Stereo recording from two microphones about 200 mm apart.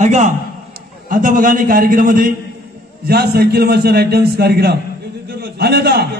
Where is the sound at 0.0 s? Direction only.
35° right (ahead or behind).